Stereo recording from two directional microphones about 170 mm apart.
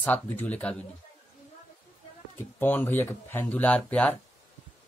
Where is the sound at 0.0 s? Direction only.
10° left (ahead or behind).